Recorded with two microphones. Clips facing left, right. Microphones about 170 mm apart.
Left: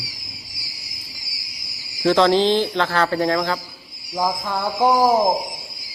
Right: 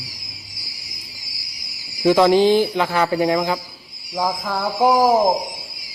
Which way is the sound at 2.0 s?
10° right (ahead or behind).